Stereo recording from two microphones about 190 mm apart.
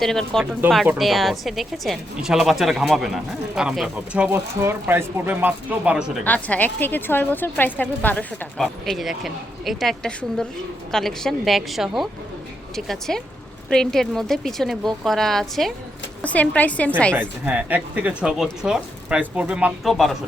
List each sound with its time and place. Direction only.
0.0 s speech: centre (ahead or behind)
6.2 s a woman's voice: 10° left (ahead or behind)
17.2 s speech: 10° right (ahead or behind)